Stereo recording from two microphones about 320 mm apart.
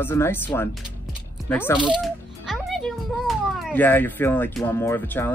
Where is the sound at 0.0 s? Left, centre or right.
Centre.